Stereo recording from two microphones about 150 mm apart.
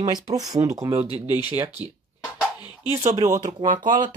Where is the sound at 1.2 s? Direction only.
25° left (ahead or behind).